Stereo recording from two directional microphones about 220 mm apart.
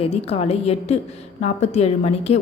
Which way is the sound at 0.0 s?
25° left (ahead or behind).